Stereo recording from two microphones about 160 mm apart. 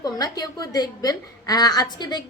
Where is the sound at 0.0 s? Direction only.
25° left (ahead or behind).